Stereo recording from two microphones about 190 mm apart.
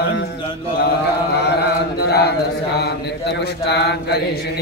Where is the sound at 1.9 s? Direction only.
60° left (ahead or behind).